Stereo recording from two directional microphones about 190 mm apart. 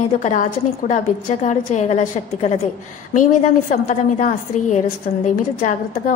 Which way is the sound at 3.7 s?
40° left (ahead or behind).